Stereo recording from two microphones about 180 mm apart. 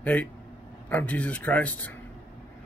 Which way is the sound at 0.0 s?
10° left (ahead or behind).